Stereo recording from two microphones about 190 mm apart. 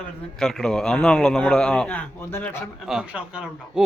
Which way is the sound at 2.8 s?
5° right (ahead or behind).